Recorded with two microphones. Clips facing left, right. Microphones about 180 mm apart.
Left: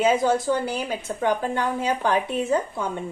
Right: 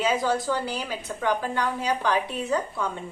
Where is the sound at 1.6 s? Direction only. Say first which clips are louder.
Left 2 dB; 50° left (ahead or behind).